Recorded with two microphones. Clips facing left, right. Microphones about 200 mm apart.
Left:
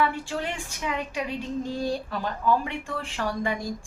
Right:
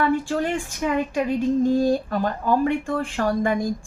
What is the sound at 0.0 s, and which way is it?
A woman's voice, 45° right (ahead or behind).